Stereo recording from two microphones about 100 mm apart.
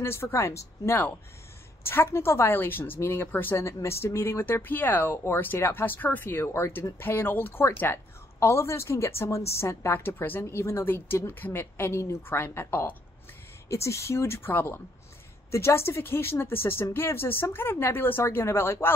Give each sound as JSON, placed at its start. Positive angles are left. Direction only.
{"t": 0.0, "sound": "speech", "side_deg": 25}